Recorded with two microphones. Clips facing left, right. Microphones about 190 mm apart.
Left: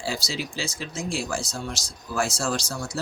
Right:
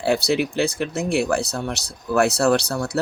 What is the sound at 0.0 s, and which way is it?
Speech, 60° right (ahead or behind).